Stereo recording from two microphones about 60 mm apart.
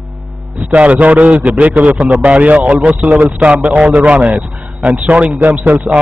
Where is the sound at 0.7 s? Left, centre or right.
Right.